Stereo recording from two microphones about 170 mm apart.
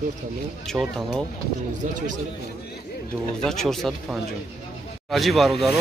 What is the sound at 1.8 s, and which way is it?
Speech, 50° right (ahead or behind).